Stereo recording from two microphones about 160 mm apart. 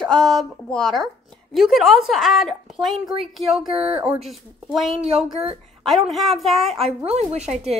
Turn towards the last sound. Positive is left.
turn(degrees=-40)  # may be behind; listen again after turning